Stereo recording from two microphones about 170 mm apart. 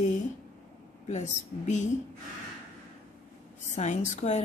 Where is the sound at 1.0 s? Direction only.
45° left (ahead or behind).